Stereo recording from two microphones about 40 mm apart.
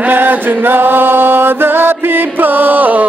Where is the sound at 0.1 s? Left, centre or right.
Right.